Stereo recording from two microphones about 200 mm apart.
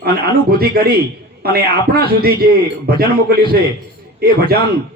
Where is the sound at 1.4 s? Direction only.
50° right (ahead or behind).